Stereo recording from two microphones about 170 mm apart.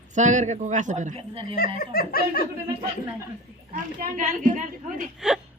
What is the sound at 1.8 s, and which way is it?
Speech, 60° left (ahead or behind).